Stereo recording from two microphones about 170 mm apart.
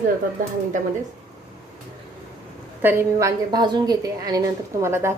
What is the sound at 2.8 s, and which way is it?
A woman's voice, 15° right (ahead or behind).